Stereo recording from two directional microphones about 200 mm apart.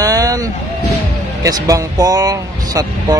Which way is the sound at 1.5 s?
15° right (ahead or behind).